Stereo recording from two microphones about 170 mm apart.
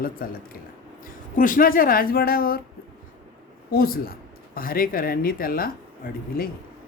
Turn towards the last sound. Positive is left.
turn(degrees=60)  # may be behind; listen again after turning